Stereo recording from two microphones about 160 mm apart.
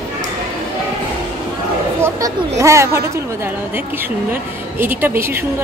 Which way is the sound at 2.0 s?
20° right (ahead or behind).